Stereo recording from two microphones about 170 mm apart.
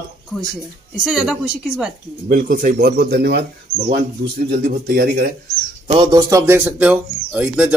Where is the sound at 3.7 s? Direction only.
65° right (ahead or behind).